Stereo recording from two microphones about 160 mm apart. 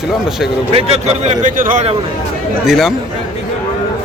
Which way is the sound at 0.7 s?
40° right (ahead or behind).